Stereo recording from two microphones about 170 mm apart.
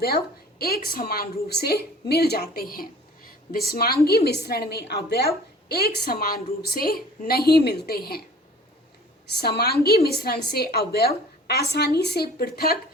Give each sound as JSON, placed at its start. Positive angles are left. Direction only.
{"t": 0.6, "sound": "a woman's voice", "side_deg": 60}
{"t": 9.4, "sound": "a woman's voice", "side_deg": 70}